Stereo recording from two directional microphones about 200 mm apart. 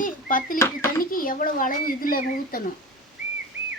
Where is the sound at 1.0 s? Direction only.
45° left (ahead or behind).